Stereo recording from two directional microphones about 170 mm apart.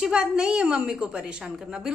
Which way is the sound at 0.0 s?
5° right (ahead or behind).